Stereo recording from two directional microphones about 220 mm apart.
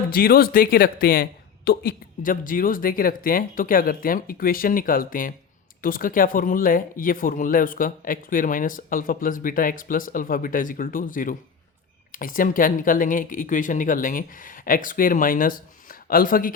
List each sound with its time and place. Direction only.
0.1 s speech: 45° left (ahead or behind)